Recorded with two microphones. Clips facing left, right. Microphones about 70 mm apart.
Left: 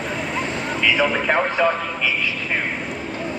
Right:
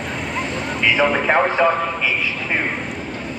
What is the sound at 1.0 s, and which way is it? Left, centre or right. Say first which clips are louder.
Speech: right 5 dB; centre.